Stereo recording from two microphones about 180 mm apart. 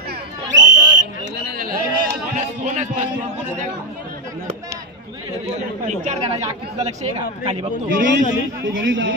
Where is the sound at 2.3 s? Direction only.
40° right (ahead or behind).